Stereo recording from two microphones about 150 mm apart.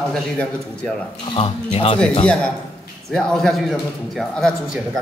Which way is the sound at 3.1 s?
5° left (ahead or behind).